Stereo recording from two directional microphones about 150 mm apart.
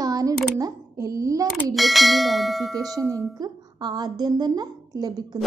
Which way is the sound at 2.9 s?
20° right (ahead or behind).